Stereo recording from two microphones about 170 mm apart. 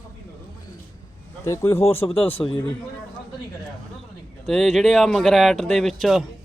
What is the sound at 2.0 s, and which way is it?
Speech, 25° left (ahead or behind).